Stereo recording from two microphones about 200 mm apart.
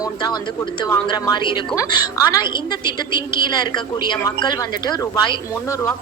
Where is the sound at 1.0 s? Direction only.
20° left (ahead or behind).